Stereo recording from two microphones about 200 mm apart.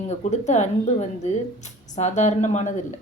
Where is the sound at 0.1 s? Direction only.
35° left (ahead or behind).